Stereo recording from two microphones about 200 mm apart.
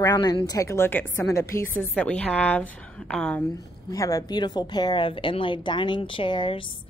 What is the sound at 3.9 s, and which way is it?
A woman's voice, 15° left (ahead or behind).